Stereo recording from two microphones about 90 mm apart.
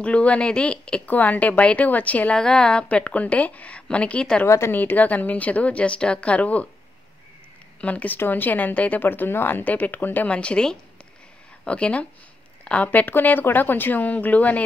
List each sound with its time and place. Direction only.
0.0 s a woman's voice: 15° left (ahead or behind)
4.5 s a woman's voice: 30° left (ahead or behind)
7.8 s a woman's voice: 15° left (ahead or behind)